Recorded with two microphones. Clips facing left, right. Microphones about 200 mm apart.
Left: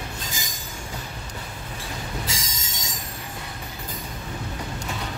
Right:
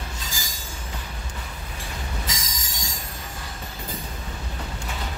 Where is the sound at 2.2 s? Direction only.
30° left (ahead or behind).